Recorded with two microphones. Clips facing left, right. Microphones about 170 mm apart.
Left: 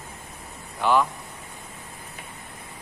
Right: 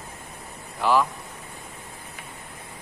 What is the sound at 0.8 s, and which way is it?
Speech, centre (ahead or behind).